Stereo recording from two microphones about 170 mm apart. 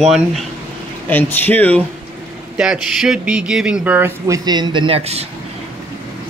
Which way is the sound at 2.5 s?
5° right (ahead or behind).